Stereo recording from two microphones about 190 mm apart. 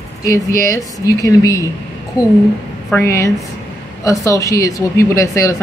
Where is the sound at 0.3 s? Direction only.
15° left (ahead or behind).